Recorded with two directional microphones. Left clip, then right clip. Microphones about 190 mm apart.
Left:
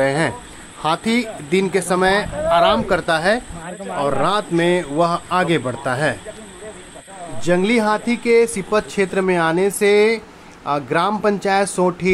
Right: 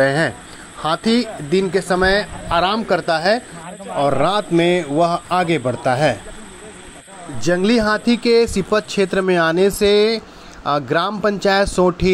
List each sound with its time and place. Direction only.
0.0 s speech: 10° right (ahead or behind)
7.4 s speech: 15° right (ahead or behind)